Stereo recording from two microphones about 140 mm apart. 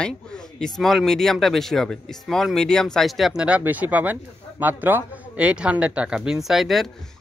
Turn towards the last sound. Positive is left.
turn(degrees=0)  # may be behind; listen again after turning